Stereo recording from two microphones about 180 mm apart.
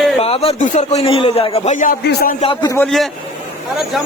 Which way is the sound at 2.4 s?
25° left (ahead or behind).